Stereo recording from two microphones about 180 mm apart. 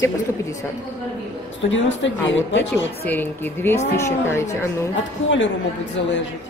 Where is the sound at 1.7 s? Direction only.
90° left.